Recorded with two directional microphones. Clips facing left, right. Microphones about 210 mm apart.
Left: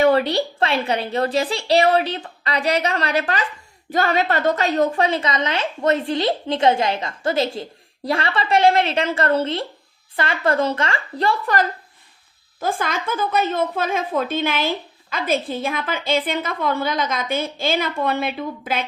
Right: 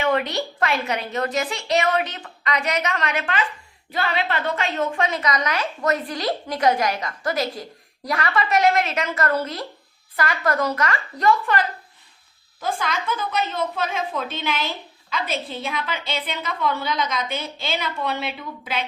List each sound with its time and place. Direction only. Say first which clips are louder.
0.0 s a woman's voice: left 6 dB; 35° left (ahead or behind)
12.5 s a woman's voice: left 2 dB; 50° left (ahead or behind)